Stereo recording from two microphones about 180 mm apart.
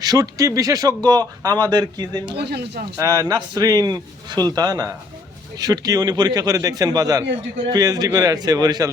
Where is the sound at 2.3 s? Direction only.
65° right (ahead or behind).